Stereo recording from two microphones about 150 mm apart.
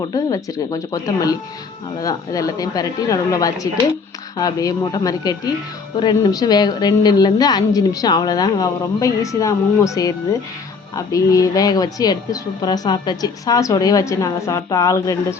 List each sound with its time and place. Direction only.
0.1 s a woman's voice: 25° left (ahead or behind)